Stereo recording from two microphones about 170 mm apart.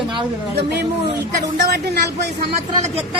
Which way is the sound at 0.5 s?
75° right (ahead or behind).